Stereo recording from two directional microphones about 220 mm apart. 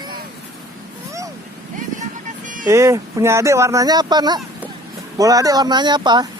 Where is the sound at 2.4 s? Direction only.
35° right (ahead or behind).